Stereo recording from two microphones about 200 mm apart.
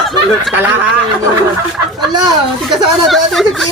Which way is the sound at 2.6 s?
Centre (ahead or behind).